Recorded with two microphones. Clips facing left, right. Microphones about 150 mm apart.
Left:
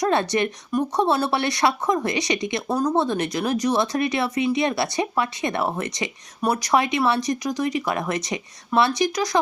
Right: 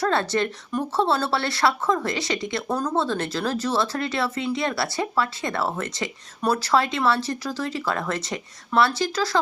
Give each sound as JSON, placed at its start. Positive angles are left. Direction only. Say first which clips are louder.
{"t": 0.0, "sound": "speech", "louder": "left 2 dB", "side_deg": 20}